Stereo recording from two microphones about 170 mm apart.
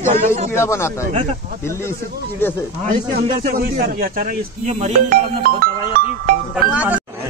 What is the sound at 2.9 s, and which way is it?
A man's voice, 55° right (ahead or behind).